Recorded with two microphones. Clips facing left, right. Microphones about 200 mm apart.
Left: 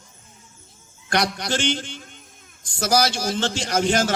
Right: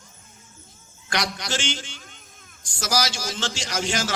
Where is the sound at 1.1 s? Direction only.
55° left (ahead or behind).